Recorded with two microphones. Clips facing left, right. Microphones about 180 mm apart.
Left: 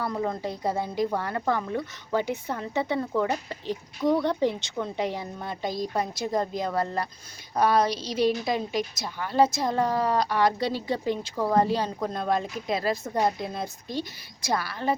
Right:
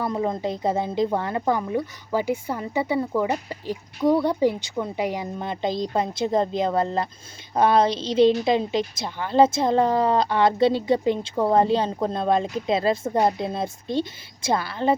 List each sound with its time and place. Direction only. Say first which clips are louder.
0.0 s speech: right 4 dB; 20° right (ahead or behind)